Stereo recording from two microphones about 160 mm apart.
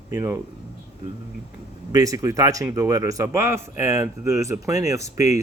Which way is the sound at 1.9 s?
20° right (ahead or behind).